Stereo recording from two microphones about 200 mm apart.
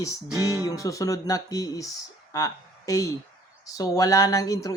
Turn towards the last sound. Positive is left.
turn(degrees=15)  # may be behind; listen again after turning